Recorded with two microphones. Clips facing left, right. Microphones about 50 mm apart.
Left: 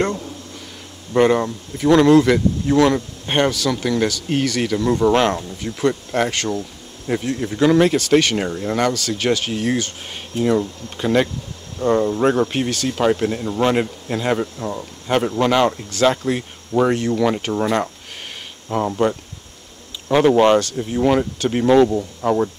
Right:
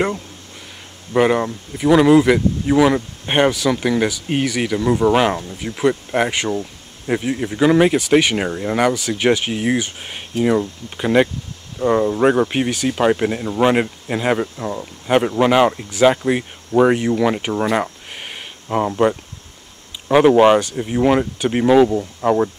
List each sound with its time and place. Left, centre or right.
1.1 s speech: centre